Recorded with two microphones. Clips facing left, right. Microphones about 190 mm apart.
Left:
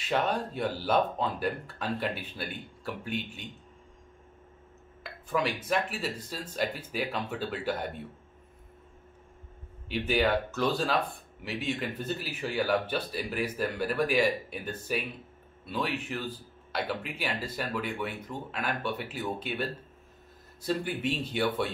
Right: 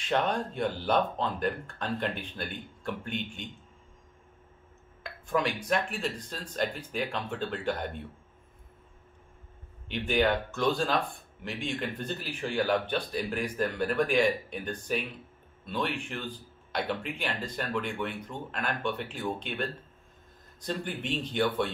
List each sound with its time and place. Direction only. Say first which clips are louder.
0.0 s speech: even; 5° left (ahead or behind)
5.0 s speech: right 1 dB; 5° left (ahead or behind)
9.8 s speech: even; 5° left (ahead or behind)